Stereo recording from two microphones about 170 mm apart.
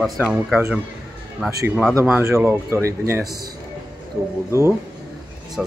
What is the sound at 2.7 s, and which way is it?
Speech, 15° right (ahead or behind).